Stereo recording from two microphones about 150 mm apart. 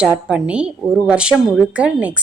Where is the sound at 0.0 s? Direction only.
5° right (ahead or behind).